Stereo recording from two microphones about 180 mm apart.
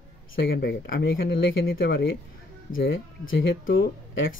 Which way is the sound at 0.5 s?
60° left (ahead or behind).